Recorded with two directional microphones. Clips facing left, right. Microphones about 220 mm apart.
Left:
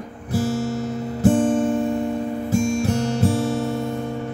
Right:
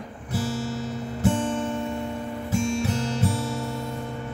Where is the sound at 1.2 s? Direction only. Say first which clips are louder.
Left 8 dB; 45° left (ahead or behind).